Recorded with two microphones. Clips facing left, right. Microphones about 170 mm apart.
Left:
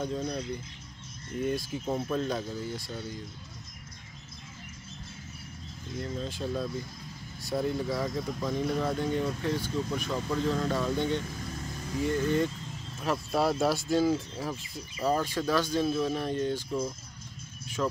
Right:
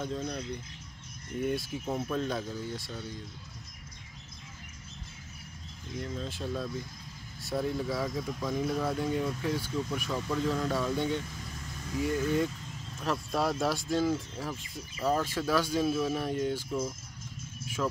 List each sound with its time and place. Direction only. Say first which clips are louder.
0.2 s speech: left 3 dB; 35° left (ahead or behind)
1.4 s speech: left 1 dB; centre (ahead or behind)
5.9 s speech: left 2 dB; centre (ahead or behind)
17.8 s speech: left 2 dB; 5° left (ahead or behind)